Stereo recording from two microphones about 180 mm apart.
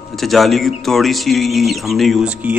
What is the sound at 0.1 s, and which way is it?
Speech, centre (ahead or behind).